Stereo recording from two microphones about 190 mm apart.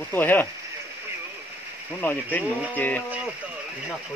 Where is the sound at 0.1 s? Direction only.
10° left (ahead or behind).